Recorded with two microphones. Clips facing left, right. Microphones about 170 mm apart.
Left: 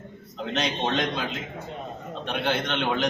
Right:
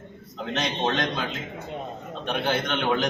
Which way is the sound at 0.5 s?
Centre (ahead or behind).